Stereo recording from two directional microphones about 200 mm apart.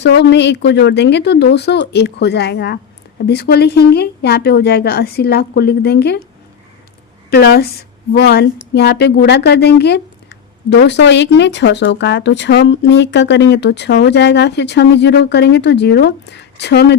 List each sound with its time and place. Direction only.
0.0 s a woman's voice: 60° left (ahead or behind)
7.3 s a woman's voice: 55° left (ahead or behind)